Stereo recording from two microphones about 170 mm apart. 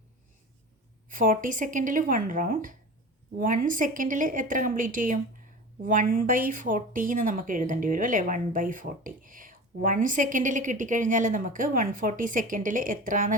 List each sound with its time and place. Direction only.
1.1 s speech: 55° right (ahead or behind)